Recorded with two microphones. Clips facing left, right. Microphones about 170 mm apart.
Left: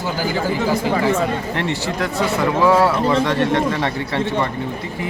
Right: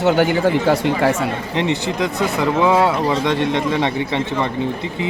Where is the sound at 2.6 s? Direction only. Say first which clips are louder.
Left 2 dB; 20° right (ahead or behind).